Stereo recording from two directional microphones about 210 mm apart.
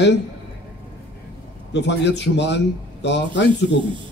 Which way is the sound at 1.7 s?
55° left (ahead or behind).